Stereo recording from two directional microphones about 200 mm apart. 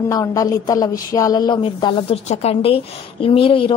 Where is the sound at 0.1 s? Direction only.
15° left (ahead or behind).